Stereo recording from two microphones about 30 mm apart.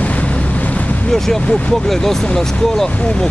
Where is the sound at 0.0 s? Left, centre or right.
Left.